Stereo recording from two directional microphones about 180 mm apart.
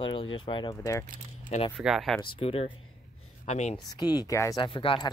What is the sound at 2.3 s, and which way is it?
Speech, 30° left (ahead or behind).